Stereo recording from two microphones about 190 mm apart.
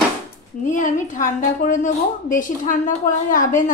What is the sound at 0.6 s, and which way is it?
A woman's voice, 45° left (ahead or behind).